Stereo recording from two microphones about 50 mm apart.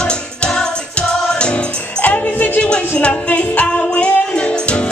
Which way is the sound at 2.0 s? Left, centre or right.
Left.